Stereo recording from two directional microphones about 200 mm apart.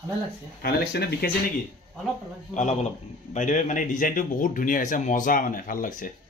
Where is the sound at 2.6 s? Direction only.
35° left (ahead or behind).